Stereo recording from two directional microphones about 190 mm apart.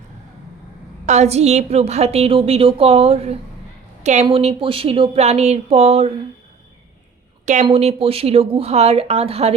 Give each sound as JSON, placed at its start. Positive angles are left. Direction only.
{"t": 1.0, "sound": "a woman's voice", "side_deg": -35}
{"t": 7.4, "sound": "a woman's voice", "side_deg": -35}